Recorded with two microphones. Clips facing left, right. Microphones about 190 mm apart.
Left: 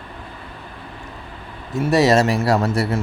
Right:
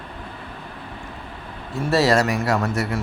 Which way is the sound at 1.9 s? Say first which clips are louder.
Left 3 dB; 20° left (ahead or behind).